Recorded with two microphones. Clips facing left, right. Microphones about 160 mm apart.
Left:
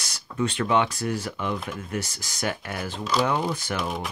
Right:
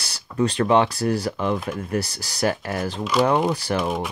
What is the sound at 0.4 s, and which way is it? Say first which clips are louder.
Speech: right 5 dB; 35° right (ahead or behind).